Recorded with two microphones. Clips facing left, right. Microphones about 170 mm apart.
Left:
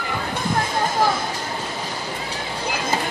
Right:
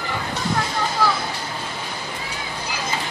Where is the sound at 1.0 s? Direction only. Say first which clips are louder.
Left 1 dB; 50° left (ahead or behind).